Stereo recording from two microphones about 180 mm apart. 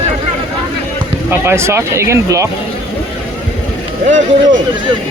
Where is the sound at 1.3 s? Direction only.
15° right (ahead or behind).